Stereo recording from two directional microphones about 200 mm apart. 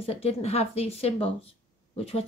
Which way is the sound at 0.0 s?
30° left (ahead or behind).